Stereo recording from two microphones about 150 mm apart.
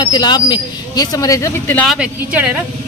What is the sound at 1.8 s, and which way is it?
Speech, 5° right (ahead or behind).